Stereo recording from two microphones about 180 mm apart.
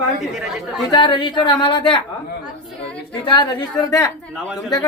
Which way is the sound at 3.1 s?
25° left (ahead or behind).